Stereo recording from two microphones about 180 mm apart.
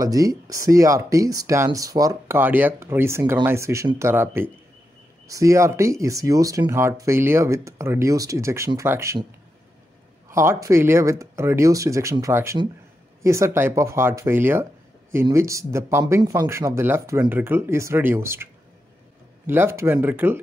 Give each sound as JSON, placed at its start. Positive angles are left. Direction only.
{"t": 0.0, "sound": "speech", "side_deg": -20}
{"t": 10.3, "sound": "speech", "side_deg": -15}